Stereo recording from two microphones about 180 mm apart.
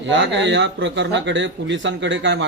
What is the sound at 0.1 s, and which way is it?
Speech, 90° right.